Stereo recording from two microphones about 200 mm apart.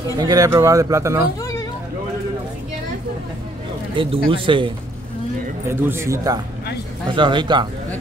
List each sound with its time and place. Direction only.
0.2 s speech: 20° right (ahead or behind)
3.9 s speech: 25° right (ahead or behind)
5.7 s speech: 15° right (ahead or behind)